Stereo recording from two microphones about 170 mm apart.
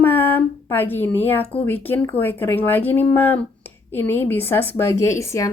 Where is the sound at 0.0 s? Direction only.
10° left (ahead or behind).